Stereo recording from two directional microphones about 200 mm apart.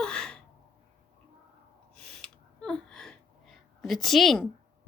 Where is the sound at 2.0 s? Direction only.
5° left (ahead or behind).